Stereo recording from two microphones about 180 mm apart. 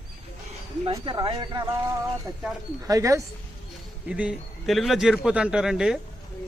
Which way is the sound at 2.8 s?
20° right (ahead or behind).